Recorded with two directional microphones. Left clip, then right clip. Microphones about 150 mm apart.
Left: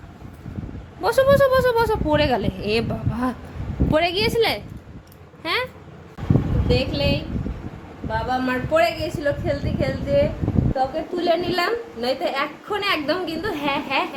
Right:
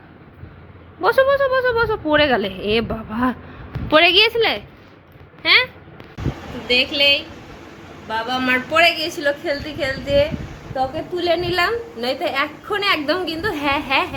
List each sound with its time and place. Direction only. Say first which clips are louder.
1.0 s speech: right 3 dB; 15° left (ahead or behind)
1.3 s speech: left 1 dB; 30° left (ahead or behind)
2.0 s a woman's voice: right 4 dB; 10° left (ahead or behind)
4.4 s speech: right 2 dB; 15° left (ahead or behind)
6.7 s a woman's voice: right 8 dB; centre (ahead or behind)